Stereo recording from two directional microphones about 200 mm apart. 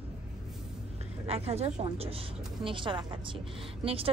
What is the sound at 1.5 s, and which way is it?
A woman's voice, 30° right (ahead or behind).